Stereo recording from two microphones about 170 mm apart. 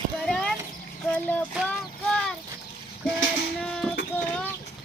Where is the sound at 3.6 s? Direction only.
5° left (ahead or behind).